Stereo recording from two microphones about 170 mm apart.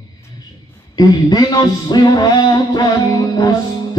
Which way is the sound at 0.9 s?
25° left (ahead or behind).